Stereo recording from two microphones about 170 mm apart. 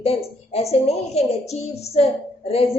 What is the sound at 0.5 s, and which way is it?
A woman's voice, 40° left (ahead or behind).